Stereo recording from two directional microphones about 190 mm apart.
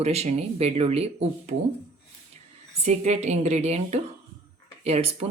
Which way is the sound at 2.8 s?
35° right (ahead or behind).